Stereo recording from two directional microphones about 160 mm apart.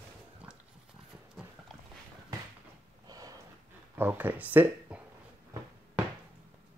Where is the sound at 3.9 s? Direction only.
10° right (ahead or behind).